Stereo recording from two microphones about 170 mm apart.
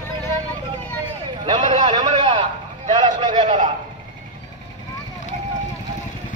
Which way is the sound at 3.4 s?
45° right (ahead or behind).